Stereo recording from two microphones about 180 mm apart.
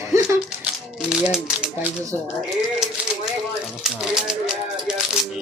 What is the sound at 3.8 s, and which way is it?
Typewriter, 5° right (ahead or behind).